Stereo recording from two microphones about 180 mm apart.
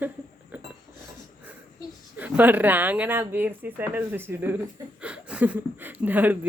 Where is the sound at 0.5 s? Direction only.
10° right (ahead or behind).